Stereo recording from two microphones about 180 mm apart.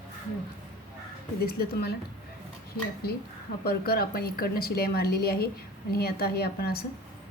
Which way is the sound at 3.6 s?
60° left (ahead or behind).